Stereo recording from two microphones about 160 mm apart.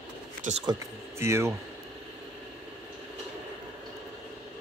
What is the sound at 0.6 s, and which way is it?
Speech, 20° right (ahead or behind).